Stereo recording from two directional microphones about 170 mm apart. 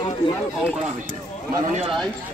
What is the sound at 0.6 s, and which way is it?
Speech, 5° right (ahead or behind).